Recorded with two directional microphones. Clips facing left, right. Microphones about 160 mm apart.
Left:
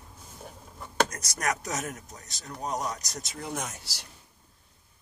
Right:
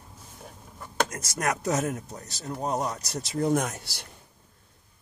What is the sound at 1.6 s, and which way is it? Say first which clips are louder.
Speech: right 7 dB; 30° right (ahead or behind).